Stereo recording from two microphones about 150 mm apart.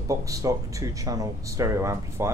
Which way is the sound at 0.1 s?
20° right (ahead or behind).